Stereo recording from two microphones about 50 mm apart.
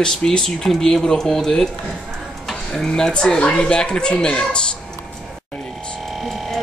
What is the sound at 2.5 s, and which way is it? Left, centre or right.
Tick-tock, centre.